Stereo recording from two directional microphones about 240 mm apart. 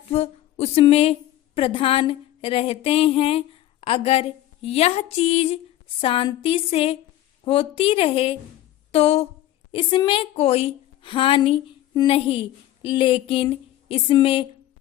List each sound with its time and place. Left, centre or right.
0.1 s a woman's voice: left